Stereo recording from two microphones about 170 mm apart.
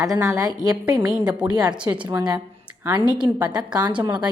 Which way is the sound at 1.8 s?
30° right (ahead or behind).